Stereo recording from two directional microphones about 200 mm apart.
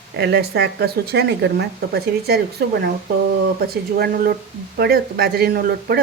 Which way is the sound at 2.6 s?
55° right (ahead or behind).